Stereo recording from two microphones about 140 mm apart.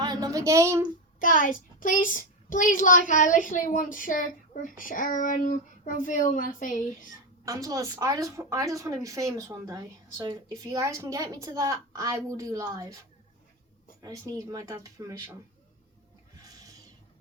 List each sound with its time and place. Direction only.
0.0 s a woman's voice: 30° right (ahead or behind)
1.2 s a child's voice: 75° left (ahead or behind)
7.4 s a woman's voice: 25° right (ahead or behind)
14.0 s a woman's voice: 20° right (ahead or behind)
16.4 s a sound: 25° right (ahead or behind)